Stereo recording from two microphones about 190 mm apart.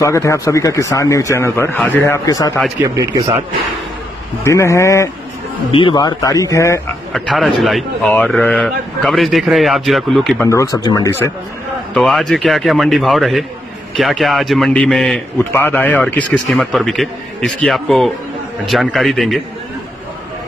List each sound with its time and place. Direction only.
0.0 s speech: 15° left (ahead or behind)
2.8 s speech: 20° right (ahead or behind)
4.5 s speech: 15° left (ahead or behind)
5.7 s speech: 25° left (ahead or behind)
7.1 s a man's voice: centre (ahead or behind)
10.4 s speech: 15° left (ahead or behind)
11.9 s a man's voice: centre (ahead or behind)